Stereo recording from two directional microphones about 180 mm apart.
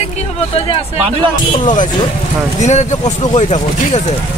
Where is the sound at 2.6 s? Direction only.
40° left (ahead or behind).